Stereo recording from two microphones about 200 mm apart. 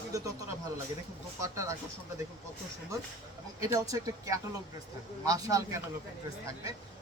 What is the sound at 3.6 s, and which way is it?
Speech, 15° right (ahead or behind).